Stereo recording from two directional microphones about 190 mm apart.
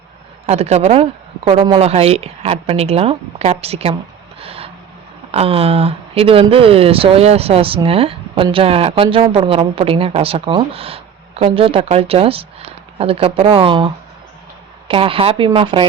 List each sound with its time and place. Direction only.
0.4 s speech: 35° right (ahead or behind)
4.4 s vehicle: 30° right (ahead or behind)
5.3 s speech: 30° right (ahead or behind)